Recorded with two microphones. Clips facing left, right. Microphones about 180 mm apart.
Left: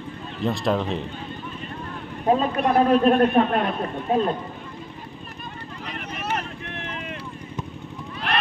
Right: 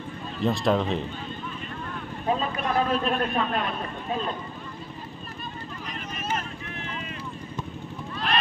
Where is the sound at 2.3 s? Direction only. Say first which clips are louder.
Left 6 dB; 45° left (ahead or behind).